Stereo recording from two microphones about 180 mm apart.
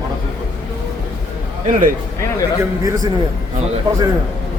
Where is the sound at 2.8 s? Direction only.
20° right (ahead or behind).